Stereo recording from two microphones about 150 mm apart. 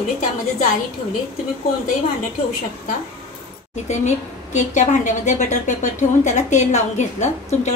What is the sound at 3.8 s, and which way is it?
A woman's voice, 50° left (ahead or behind).